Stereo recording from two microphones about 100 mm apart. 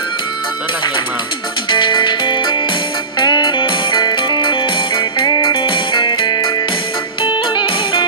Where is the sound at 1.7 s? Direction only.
50° left (ahead or behind).